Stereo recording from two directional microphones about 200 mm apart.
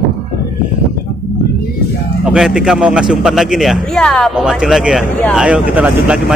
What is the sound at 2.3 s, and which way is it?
A man's voice, 5° right (ahead or behind).